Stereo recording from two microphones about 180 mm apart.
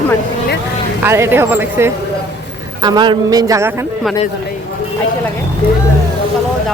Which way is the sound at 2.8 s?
25° right (ahead or behind).